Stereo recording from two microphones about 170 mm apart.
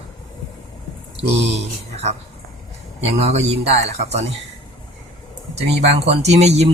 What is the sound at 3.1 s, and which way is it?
Speech, 40° right (ahead or behind).